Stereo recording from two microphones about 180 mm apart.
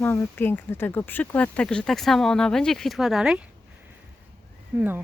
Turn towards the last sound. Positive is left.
turn(degrees=-10)  # may be behind; listen again after turning